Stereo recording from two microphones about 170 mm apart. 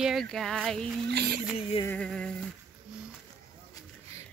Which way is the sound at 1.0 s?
75° right (ahead or behind).